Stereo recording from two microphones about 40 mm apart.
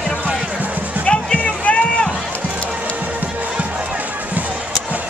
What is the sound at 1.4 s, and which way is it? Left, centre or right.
Rowboat, left.